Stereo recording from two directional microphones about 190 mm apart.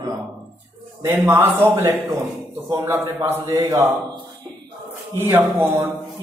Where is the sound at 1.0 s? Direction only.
10° right (ahead or behind).